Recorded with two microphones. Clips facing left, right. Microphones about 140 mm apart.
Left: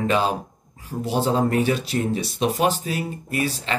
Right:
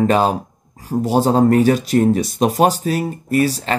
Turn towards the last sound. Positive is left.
turn(degrees=-40)  # may be behind; listen again after turning